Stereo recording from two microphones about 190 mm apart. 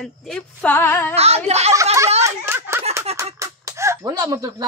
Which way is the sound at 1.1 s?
35° right (ahead or behind).